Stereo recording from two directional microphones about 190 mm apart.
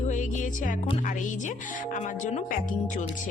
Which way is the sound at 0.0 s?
40° left (ahead or behind).